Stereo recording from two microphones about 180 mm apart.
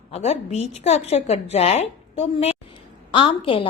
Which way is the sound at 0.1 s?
35° left (ahead or behind).